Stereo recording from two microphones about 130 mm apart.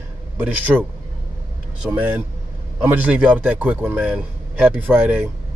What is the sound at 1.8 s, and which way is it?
A man's voice, 15° right (ahead or behind).